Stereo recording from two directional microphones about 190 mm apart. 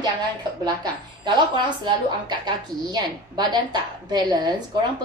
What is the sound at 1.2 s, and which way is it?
A woman's voice, 25° right (ahead or behind).